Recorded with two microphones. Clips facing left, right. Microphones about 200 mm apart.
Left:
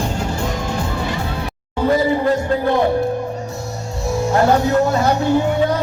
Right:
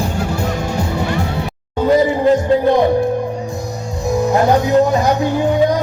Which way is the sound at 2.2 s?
20° right (ahead or behind).